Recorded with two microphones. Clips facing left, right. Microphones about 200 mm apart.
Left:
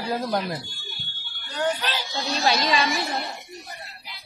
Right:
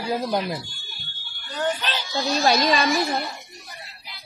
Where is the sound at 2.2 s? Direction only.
45° right (ahead or behind).